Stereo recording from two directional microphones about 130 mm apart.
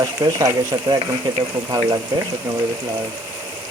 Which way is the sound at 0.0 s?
25° right (ahead or behind).